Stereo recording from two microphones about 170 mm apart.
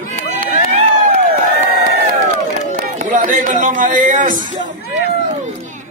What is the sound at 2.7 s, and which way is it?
Speech, 50° right (ahead or behind).